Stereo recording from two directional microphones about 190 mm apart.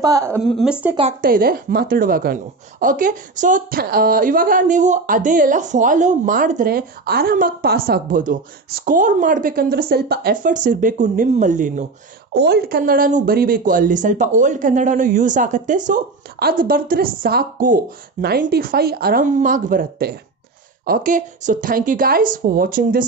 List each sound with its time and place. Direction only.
0.0 s speech: 15° right (ahead or behind)
0.4 s speech: centre (ahead or behind)
1.2 s a woman's voice: 50° right (ahead or behind)
12.4 s a woman's voice: 60° right (ahead or behind)